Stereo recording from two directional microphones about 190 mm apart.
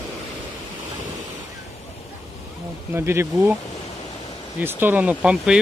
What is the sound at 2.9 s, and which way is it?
Speech, 15° right (ahead or behind).